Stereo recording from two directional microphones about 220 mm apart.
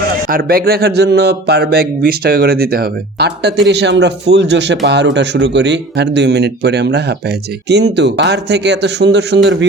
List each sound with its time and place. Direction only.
0.3 s speech: 40° right (ahead or behind)